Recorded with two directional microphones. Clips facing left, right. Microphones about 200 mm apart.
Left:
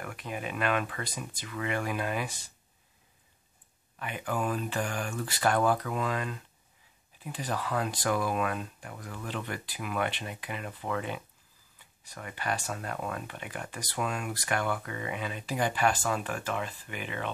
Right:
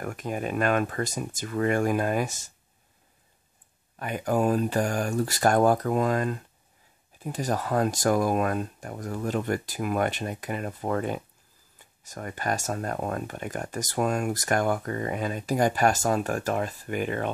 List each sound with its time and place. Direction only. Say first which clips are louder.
0.0 s speech: right 6 dB; 45° right (ahead or behind)
4.0 s speech: right 8 dB; 40° right (ahead or behind)